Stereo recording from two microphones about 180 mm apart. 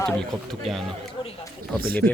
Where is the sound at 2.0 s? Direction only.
55° right (ahead or behind).